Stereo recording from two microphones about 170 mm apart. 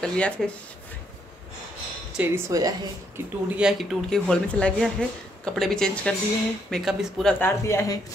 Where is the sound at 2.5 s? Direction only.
20° right (ahead or behind).